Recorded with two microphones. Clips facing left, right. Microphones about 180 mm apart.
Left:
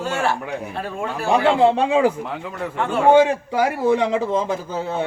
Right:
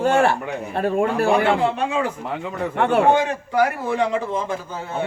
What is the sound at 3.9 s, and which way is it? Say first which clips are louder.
Speech: left 3 dB; 20° left (ahead or behind).